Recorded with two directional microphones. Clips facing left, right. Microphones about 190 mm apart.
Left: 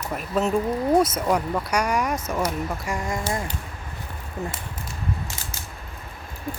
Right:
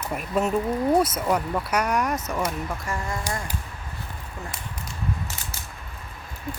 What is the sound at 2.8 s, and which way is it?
Speech, 15° left (ahead or behind).